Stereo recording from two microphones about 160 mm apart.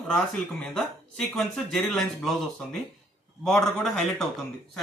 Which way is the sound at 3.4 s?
Centre (ahead or behind).